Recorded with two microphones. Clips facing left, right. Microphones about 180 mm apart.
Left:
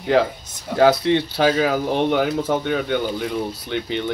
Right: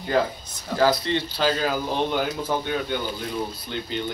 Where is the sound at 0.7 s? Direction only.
65° left (ahead or behind).